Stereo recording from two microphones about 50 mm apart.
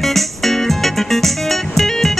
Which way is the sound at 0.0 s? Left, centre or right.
Centre.